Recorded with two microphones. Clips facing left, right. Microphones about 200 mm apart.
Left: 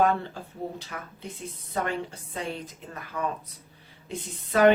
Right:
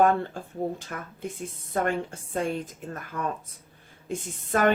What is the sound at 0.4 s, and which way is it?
Speech, 50° right (ahead or behind).